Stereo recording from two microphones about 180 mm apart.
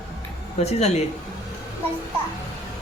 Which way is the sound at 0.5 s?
35° left (ahead or behind).